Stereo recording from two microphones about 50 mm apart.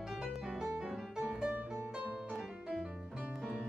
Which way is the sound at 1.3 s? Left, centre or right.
Centre.